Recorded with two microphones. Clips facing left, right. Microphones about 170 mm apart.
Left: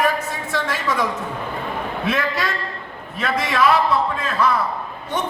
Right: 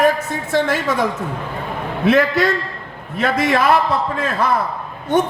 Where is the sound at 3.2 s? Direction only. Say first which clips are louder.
Right 3 dB; 50° right (ahead or behind).